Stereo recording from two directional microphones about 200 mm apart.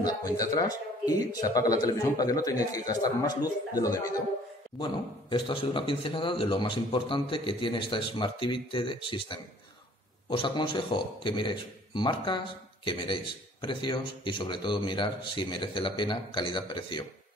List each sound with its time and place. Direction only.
0.0 s a man's voice: 20° left (ahead or behind)